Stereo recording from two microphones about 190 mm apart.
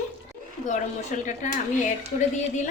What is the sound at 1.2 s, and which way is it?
A woman's voice, 40° left (ahead or behind).